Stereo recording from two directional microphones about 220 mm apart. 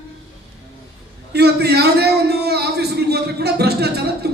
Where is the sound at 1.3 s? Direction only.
45° right (ahead or behind).